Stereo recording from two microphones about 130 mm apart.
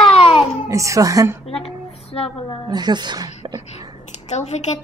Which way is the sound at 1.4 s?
50° left (ahead or behind).